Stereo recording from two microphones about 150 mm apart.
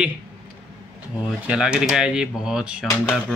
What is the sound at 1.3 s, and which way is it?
Speech, 5° right (ahead or behind).